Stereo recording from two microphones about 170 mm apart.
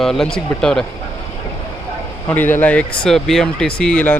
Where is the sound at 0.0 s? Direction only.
Centre (ahead or behind).